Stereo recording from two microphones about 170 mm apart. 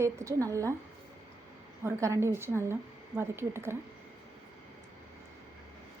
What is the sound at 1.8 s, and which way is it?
A woman's voice, 15° right (ahead or behind).